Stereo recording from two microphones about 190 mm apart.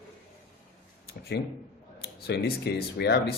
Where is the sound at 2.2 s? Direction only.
60° left (ahead or behind).